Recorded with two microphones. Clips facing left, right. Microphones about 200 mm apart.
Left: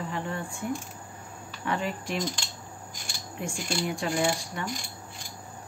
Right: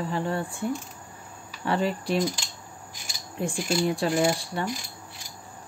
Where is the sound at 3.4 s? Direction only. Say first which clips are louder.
Right 6 dB; 35° right (ahead or behind).